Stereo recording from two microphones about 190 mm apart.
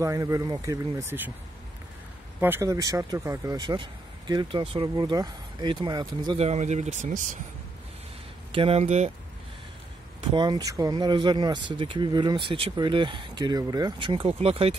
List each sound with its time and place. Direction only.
0.0 s speech: 15° right (ahead or behind)
2.4 s speech: 15° right (ahead or behind)
6.4 s speech: 35° right (ahead or behind)
8.5 s speech: 30° right (ahead or behind)
10.3 s speech: 25° right (ahead or behind)